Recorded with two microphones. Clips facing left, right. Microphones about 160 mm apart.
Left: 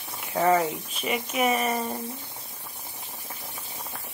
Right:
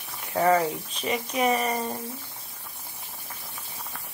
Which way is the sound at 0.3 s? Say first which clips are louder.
Even; 5° left (ahead or behind).